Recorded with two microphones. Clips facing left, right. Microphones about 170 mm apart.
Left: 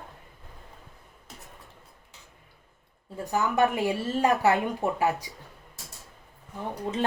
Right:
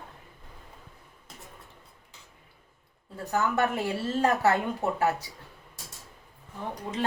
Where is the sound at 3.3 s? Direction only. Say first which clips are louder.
Left 2 dB; 15° left (ahead or behind).